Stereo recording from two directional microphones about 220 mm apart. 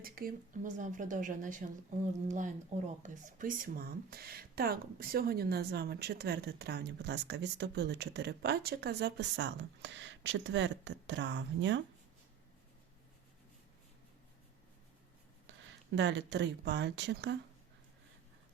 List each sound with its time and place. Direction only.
0.0 s speech: 40° right (ahead or behind)
16.0 s speech: 55° right (ahead or behind)